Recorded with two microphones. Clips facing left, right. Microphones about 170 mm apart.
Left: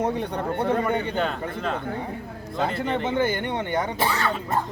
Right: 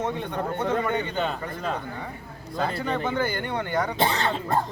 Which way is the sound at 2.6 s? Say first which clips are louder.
Left 2 dB; 20° left (ahead or behind).